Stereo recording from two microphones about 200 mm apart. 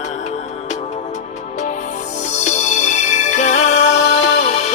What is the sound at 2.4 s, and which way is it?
Music, 35° left (ahead or behind).